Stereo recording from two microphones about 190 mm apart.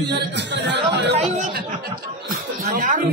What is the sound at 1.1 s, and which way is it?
Speech, 35° right (ahead or behind).